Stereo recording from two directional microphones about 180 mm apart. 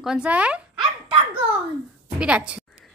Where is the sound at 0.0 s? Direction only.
5° right (ahead or behind).